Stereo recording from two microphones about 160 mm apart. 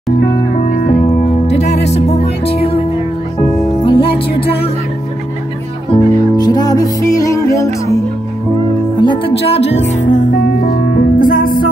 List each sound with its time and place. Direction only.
0.6 s music: 50° left (ahead or behind)
3.8 s music: 35° left (ahead or behind)
5.9 s music: 25° left (ahead or behind)
9.0 s speech: 30° left (ahead or behind); by 10.2 s 45° left (ahead or behind)
10.6 s music: 75° left (ahead or behind)